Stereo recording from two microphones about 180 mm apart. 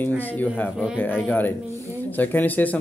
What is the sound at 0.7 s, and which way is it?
Speech, 5° right (ahead or behind).